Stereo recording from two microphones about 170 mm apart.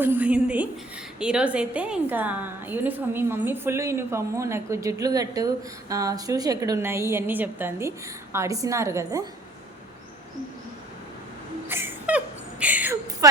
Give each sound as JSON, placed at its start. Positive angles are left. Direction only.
{"t": 0.0, "sound": "a woman's voice", "side_deg": -10}
{"t": 11.7, "sound": "speech", "side_deg": -15}